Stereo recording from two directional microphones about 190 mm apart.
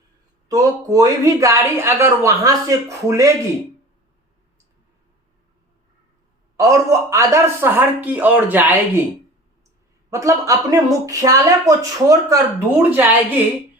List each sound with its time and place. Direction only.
0.4 s speech: 20° right (ahead or behind)
6.6 s speech: 15° right (ahead or behind)
10.1 s speech: 15° right (ahead or behind)